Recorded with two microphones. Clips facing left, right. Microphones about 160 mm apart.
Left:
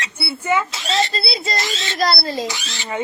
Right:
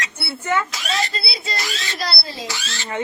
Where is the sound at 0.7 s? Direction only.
25° left (ahead or behind).